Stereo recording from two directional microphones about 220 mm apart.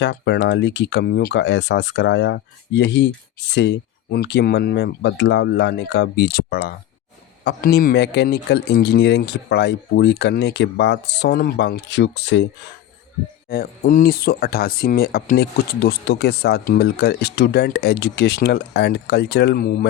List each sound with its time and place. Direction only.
0.0 s speech: 50° left (ahead or behind)
13.5 s speech: 40° left (ahead or behind)